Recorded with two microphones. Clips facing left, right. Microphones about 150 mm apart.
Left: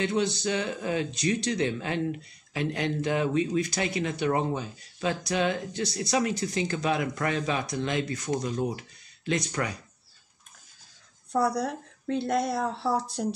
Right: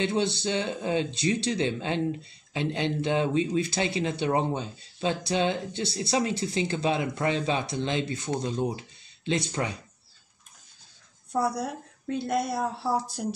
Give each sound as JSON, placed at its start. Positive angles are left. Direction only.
{"t": 0.0, "sound": "speech", "side_deg": -30}
{"t": 11.3, "sound": "speech", "side_deg": 0}